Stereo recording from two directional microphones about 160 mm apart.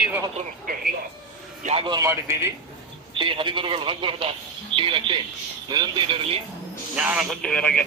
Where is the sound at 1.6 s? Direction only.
40° right (ahead or behind).